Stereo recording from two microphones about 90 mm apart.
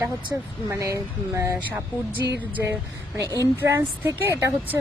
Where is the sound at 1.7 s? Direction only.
20° right (ahead or behind).